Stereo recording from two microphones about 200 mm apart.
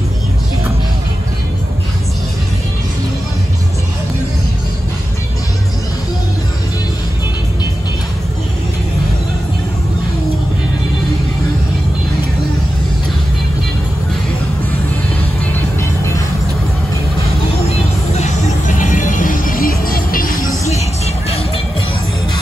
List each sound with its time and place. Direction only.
18.1 s music: 40° left (ahead or behind)